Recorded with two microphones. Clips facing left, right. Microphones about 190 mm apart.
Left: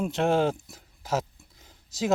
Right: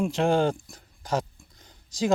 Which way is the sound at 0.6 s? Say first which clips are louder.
Right 1 dB; 5° left (ahead or behind).